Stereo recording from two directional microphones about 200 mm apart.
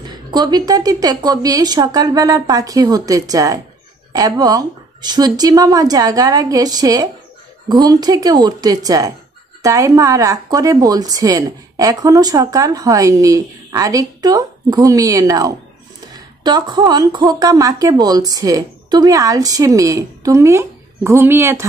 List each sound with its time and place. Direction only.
0.0 s speech: 20° right (ahead or behind)